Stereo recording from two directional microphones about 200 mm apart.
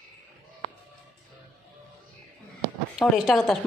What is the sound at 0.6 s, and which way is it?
Music, 30° left (ahead or behind).